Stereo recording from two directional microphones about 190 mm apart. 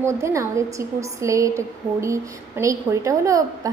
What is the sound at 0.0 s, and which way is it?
A woman's voice, 15° right (ahead or behind).